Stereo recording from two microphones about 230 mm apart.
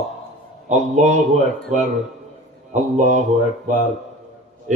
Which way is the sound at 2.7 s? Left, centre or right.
Right.